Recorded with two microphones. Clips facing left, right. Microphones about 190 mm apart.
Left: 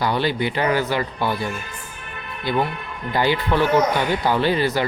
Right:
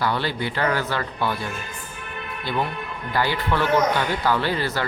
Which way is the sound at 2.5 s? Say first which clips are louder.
Left 4 dB; 15° left (ahead or behind).